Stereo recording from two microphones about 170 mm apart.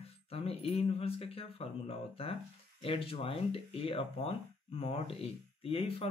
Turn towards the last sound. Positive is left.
turn(degrees=35)  # may be behind; listen again after turning